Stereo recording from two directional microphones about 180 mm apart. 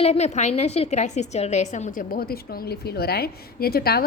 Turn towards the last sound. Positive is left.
turn(degrees=60)  # may be behind; listen again after turning